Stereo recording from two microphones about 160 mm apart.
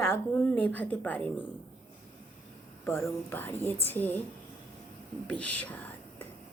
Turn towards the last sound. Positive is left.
turn(degrees=10)  # may be behind; listen again after turning